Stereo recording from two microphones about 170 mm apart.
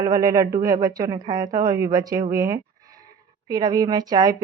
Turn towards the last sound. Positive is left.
turn(degrees=-25)  # may be behind; listen again after turning